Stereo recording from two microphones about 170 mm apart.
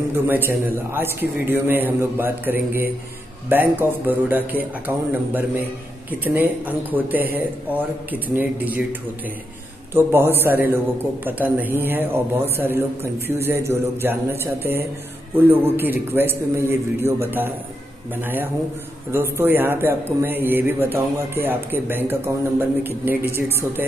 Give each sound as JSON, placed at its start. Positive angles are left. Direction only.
{"t": 0.1, "sound": "a man's voice", "side_deg": -10}
{"t": 9.9, "sound": "a man's voice", "side_deg": -15}